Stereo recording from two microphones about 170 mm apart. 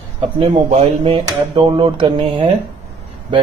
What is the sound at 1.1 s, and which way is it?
Speech, 25° right (ahead or behind).